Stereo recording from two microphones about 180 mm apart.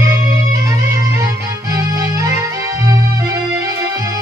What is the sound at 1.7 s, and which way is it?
Music, 20° right (ahead or behind).